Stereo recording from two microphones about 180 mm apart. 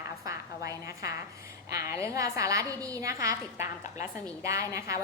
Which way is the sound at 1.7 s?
15° right (ahead or behind).